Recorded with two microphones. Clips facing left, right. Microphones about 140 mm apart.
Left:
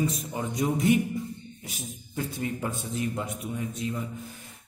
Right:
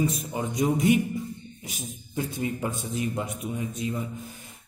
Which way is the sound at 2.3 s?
20° right (ahead or behind).